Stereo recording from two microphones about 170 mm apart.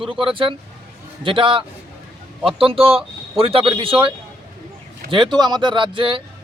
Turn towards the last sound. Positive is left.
turn(degrees=-30)  # may be behind; listen again after turning